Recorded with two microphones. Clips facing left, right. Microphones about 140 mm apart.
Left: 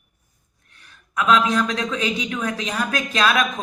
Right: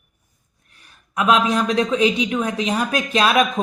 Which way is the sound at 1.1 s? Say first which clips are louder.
Right 1 dB; 30° right (ahead or behind).